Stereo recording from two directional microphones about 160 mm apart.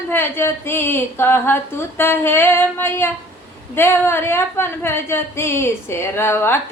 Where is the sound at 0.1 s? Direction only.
15° left (ahead or behind).